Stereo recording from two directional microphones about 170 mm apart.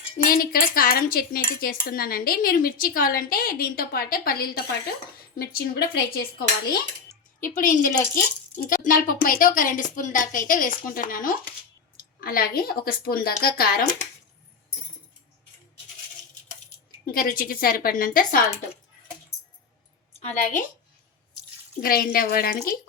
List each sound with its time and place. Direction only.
0.3 s speech: 60° left (ahead or behind)
7.4 s speech: 50° left (ahead or behind)
17.1 s speech: 60° left (ahead or behind)
20.1 s a woman's voice: 40° left (ahead or behind)
21.8 s speech: 60° left (ahead or behind)